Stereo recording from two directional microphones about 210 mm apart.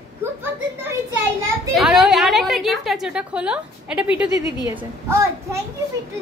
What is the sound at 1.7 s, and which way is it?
A woman's voice, centre (ahead or behind).